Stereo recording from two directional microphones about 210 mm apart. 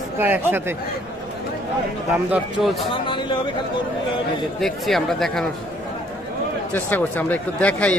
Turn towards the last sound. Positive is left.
turn(degrees=5)  # may be behind; listen again after turning